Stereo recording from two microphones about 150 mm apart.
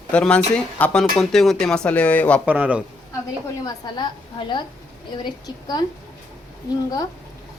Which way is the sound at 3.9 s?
30° left (ahead or behind).